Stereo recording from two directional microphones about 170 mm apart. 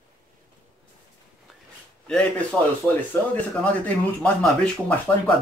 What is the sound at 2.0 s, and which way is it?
Speech, 5° left (ahead or behind).